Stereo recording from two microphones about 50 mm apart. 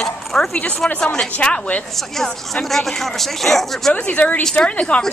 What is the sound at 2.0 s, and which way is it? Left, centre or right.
Speech, centre.